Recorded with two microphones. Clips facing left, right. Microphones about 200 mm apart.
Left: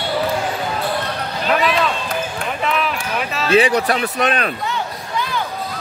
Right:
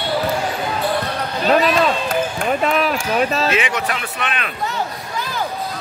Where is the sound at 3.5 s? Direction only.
35° left (ahead or behind).